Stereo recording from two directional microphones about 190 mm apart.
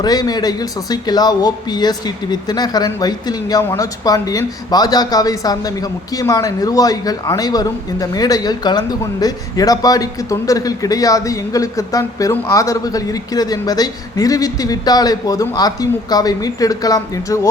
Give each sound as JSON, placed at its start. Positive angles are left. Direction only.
{"t": 0.0, "sound": "speech", "side_deg": 20}